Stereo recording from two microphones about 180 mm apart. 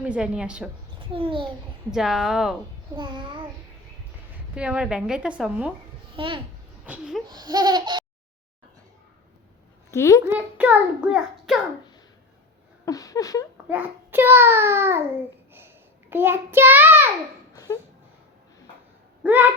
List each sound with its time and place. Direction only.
0.0 s a woman's voice: 5° right (ahead or behind)
0.9 s a child's voice: 30° right (ahead or behind)
1.9 s a woman's voice: centre (ahead or behind)
2.9 s speech: 25° right (ahead or behind)
4.5 s a woman's voice: 5° right (ahead or behind)
6.1 s speech: 30° right (ahead or behind)
6.8 s a woman's voice: 5° right (ahead or behind)
7.3 s speech: 25° right (ahead or behind)
9.9 s a woman's voice: 15° left (ahead or behind)
10.2 s a child's voice: 10° right (ahead or behind)
12.8 s a sound: 20° left (ahead or behind)
13.7 s a child's voice: 10° right (ahead or behind)
17.5 s a sound: 20° left (ahead or behind)
19.2 s speech: 10° right (ahead or behind)